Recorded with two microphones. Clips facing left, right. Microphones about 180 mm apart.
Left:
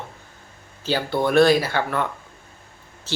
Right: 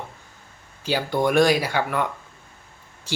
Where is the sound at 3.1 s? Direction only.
15° right (ahead or behind).